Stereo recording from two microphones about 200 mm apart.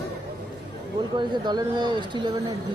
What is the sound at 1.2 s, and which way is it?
Speech, 20° right (ahead or behind).